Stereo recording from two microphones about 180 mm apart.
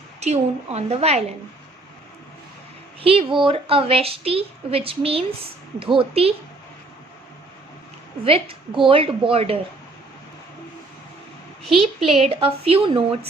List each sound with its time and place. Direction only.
0.2 s a woman's voice: 35° right (ahead or behind)
3.0 s a woman's voice: 30° right (ahead or behind)
8.2 s a woman's voice: 30° right (ahead or behind)
11.6 s a woman's voice: centre (ahead or behind)
12.1 s a woman's voice: 35° right (ahead or behind)